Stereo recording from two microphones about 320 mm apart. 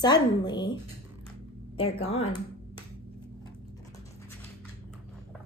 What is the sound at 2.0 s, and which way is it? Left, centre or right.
Speech, centre.